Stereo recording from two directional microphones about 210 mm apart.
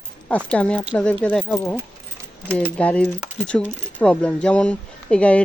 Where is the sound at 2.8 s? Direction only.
5° left (ahead or behind).